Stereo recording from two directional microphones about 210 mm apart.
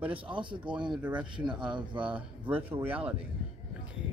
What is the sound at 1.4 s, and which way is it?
Speech, 20° right (ahead or behind).